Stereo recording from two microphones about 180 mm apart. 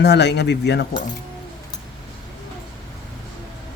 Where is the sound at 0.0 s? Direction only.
70° left (ahead or behind).